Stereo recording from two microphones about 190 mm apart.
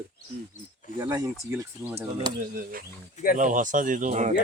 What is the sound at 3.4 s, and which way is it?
Speech, 40° right (ahead or behind).